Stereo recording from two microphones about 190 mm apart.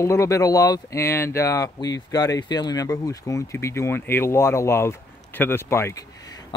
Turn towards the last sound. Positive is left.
turn(degrees=20)  # may be behind; listen again after turning